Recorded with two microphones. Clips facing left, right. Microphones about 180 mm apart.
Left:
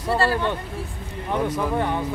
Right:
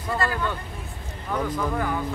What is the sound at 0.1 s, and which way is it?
Speech, 30° left (ahead or behind).